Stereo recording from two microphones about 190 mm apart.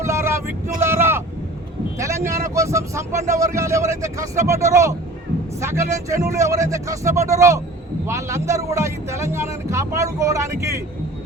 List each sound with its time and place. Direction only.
0.0 s vehicle: 15° right (ahead or behind)
2.0 s speech: 15° right (ahead or behind)